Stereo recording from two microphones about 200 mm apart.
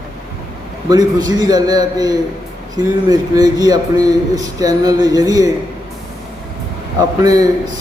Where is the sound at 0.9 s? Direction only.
20° right (ahead or behind).